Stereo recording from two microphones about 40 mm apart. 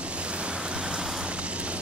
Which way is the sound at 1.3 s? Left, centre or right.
Right.